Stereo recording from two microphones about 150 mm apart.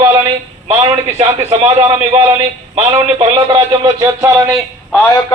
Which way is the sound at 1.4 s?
45° right (ahead or behind).